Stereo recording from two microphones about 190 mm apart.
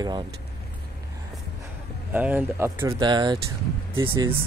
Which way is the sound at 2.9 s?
25° right (ahead or behind).